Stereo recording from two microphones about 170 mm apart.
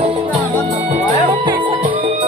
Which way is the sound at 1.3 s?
30° right (ahead or behind).